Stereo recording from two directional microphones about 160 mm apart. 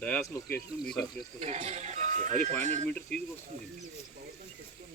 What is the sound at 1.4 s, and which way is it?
Speech, 40° right (ahead or behind).